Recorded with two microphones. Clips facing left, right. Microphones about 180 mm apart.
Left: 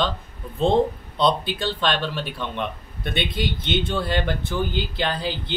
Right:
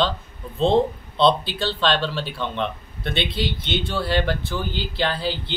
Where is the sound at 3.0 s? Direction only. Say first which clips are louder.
Right 1 dB; 15° left (ahead or behind).